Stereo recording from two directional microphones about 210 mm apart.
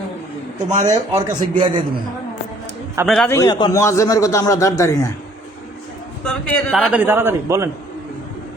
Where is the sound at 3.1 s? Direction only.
Centre (ahead or behind).